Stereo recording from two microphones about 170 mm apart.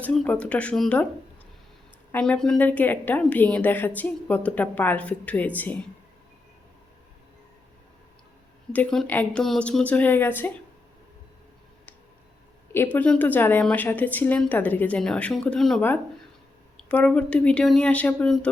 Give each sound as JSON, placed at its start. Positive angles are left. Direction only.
{"t": 0.0, "sound": "a woman's voice", "side_deg": 5}
{"t": 2.1, "sound": "a woman's voice", "side_deg": 5}
{"t": 8.7, "sound": "a woman's voice", "side_deg": 5}
{"t": 12.7, "sound": "a woman's voice", "side_deg": 10}